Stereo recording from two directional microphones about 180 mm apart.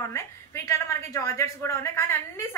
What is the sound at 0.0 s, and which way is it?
A woman's voice, 15° left (ahead or behind).